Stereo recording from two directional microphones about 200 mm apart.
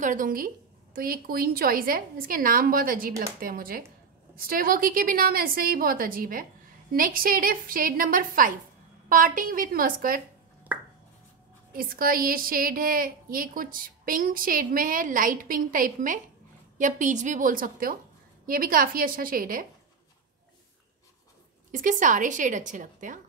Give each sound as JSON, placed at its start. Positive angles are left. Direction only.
{"t": 0.0, "sound": "a woman's voice", "side_deg": -40}
{"t": 10.7, "sound": "chopping", "side_deg": -5}
{"t": 11.7, "sound": "a woman's voice", "side_deg": -45}
{"t": 21.7, "sound": "a woman's voice", "side_deg": -40}